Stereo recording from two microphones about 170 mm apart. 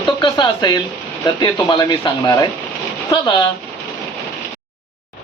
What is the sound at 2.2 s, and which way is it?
Speech, 20° left (ahead or behind).